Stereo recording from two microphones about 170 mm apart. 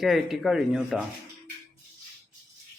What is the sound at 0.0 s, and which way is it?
Speech, centre (ahead or behind).